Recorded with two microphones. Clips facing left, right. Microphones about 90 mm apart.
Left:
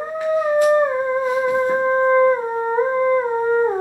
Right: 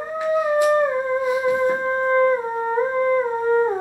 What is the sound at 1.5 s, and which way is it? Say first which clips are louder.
Music: left 3 dB; 15° left (ahead or behind).